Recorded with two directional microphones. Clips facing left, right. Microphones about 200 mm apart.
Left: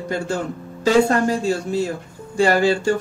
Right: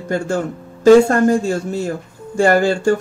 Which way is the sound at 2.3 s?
50° right (ahead or behind).